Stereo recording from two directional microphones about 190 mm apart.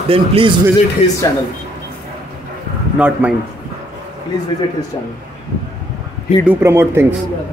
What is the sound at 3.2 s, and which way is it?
Speech, 10° right (ahead or behind).